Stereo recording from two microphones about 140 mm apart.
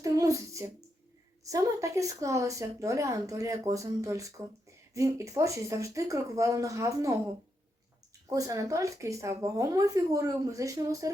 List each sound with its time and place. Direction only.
0.0 s a sound: 25° right (ahead or behind)
1.5 s a woman's voice: 25° right (ahead or behind)
8.3 s a woman's voice: 25° right (ahead or behind)